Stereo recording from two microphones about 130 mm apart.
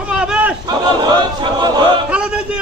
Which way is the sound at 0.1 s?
10° right (ahead or behind).